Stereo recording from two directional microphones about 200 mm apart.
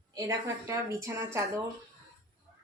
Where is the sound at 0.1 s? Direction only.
15° right (ahead or behind).